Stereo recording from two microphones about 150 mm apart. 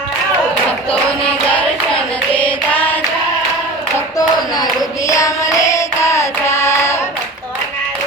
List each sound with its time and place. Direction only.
1.5 s hands: 10° left (ahead or behind)
4.2 s speech: 25° left (ahead or behind)
5.0 s carnatic music: 20° left (ahead or behind)